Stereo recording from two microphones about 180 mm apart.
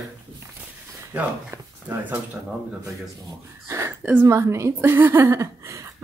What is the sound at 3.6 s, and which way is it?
A woman's voice, 15° right (ahead or behind).